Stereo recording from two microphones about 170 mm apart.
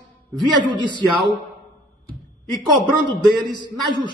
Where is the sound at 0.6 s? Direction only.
25° right (ahead or behind).